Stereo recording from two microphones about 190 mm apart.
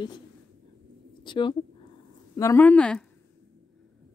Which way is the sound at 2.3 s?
15° left (ahead or behind).